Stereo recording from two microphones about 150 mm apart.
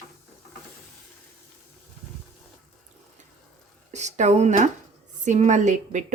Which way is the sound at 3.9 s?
50° right (ahead or behind).